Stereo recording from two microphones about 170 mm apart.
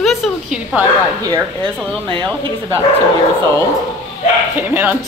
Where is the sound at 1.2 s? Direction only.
20° right (ahead or behind).